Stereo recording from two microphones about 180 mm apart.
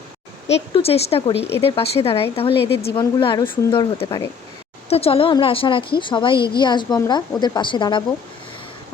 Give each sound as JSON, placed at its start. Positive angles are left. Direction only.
{"t": 0.4, "sound": "a woman's voice", "side_deg": 35}